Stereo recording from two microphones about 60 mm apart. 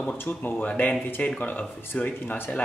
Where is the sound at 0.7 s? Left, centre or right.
Left.